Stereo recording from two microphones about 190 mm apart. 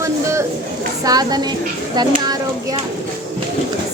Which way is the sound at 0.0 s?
15° right (ahead or behind).